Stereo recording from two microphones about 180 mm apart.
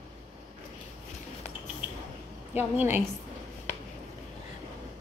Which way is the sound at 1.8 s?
5° right (ahead or behind).